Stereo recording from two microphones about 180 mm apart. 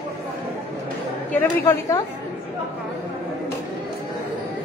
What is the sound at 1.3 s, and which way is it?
Speech, 10° left (ahead or behind).